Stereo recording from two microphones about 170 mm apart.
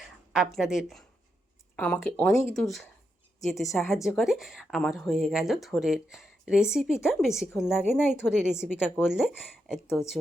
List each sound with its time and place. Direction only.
0.3 s a woman's voice: 5° right (ahead or behind)
7.9 s speech: 10° left (ahead or behind)
8.2 s a woman's voice: 5° right (ahead or behind)
9.8 s speech: 15° left (ahead or behind)